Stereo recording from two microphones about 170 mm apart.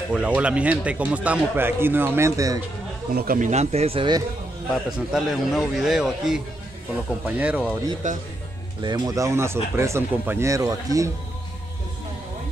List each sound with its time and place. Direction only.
0.1 s speech: 5° right (ahead or behind)
3.2 s speech: 55° right (ahead or behind); by 4.2 s 30° right (ahead or behind)
4.9 s speech: centre (ahead or behind)
8.0 s speech: 50° right (ahead or behind)
8.8 s speech: 25° right (ahead or behind)